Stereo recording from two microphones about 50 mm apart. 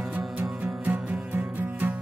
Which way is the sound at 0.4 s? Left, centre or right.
Right.